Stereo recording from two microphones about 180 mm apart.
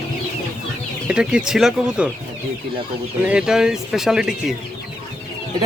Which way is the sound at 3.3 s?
5° right (ahead or behind).